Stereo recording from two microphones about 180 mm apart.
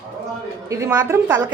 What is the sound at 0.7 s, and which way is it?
Speech, 15° right (ahead or behind).